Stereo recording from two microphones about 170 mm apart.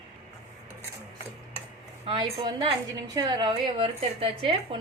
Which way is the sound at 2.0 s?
30° right (ahead or behind).